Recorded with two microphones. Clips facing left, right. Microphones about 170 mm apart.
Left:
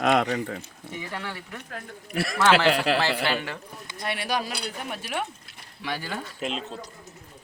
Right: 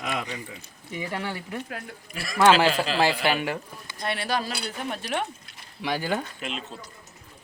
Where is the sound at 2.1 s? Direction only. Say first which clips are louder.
Right 2 dB; 65° left (ahead or behind).